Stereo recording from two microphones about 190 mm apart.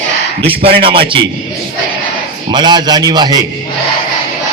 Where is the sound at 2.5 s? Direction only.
25° right (ahead or behind).